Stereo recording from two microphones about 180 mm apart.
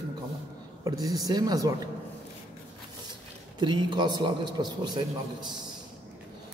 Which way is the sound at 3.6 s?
25° right (ahead or behind).